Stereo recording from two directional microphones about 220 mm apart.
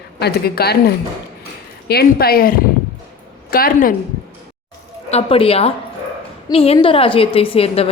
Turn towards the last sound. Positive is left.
turn(degrees=25)  # may be behind; listen again after turning